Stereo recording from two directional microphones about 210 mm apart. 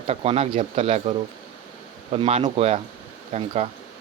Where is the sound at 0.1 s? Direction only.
30° right (ahead or behind).